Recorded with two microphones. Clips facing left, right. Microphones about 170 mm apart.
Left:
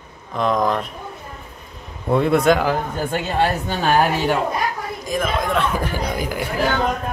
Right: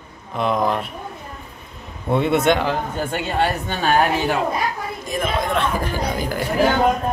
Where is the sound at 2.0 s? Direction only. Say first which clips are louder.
Left 2 dB; centre (ahead or behind).